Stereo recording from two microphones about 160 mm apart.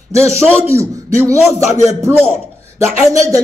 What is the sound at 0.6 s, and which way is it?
A man's voice, 15° right (ahead or behind).